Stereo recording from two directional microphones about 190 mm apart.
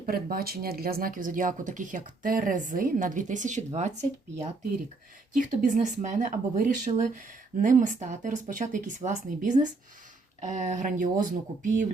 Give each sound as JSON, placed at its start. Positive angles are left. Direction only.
{"t": 0.0, "sound": "speech", "side_deg": -50}
{"t": 5.3, "sound": "speech", "side_deg": -45}